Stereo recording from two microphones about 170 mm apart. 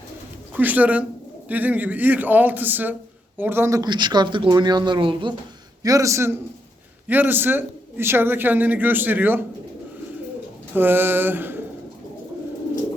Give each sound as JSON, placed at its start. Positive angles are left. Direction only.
{"t": 0.5, "sound": "speech", "side_deg": -10}
{"t": 10.8, "sound": "speech", "side_deg": -10}